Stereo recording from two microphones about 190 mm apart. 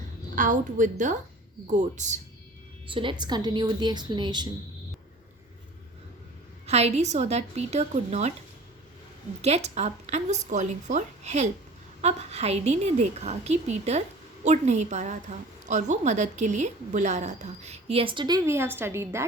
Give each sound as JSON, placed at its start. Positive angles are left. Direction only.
{"t": 0.3, "sound": "a woman's voice", "side_deg": -45}
{"t": 2.8, "sound": "a woman's voice", "side_deg": -25}
{"t": 6.7, "sound": "a woman's voice", "side_deg": -35}
{"t": 9.4, "sound": "a woman's voice", "side_deg": -35}